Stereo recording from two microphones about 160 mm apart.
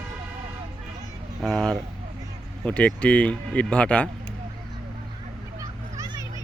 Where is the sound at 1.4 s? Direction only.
Centre (ahead or behind).